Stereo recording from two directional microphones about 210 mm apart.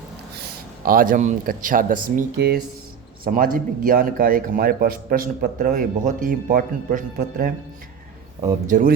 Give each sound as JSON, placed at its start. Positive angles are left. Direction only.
{"t": 0.9, "sound": "speech", "side_deg": -40}
{"t": 8.6, "sound": "speech", "side_deg": -40}